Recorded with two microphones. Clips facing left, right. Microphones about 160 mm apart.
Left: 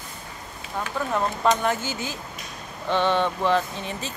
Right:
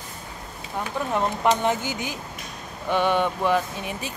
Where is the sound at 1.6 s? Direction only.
15° right (ahead or behind).